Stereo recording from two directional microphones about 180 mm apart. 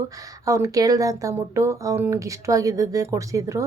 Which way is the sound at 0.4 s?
15° right (ahead or behind).